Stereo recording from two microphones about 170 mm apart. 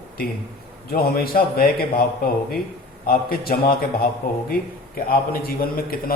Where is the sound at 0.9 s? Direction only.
65° left (ahead or behind).